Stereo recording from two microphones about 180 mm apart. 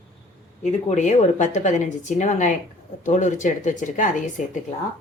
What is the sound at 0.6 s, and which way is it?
A woman's voice, 40° left (ahead or behind).